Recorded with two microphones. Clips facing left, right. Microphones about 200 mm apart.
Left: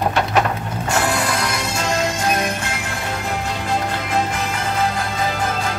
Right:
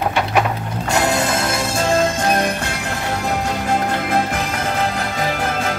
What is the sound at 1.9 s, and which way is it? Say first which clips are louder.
Music: right 3 dB; 50° right (ahead or behind).